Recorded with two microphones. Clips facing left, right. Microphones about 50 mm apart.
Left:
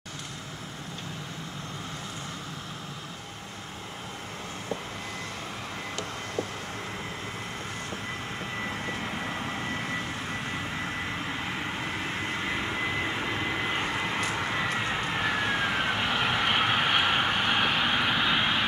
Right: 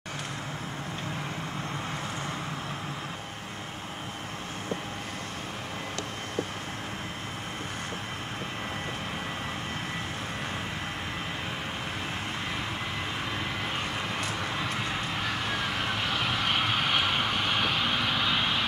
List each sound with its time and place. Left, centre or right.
13.5 s vehicle: centre